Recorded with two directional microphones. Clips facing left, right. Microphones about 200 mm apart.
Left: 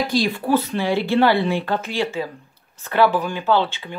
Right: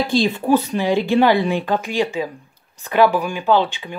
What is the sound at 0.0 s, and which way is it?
Speech, 25° right (ahead or behind).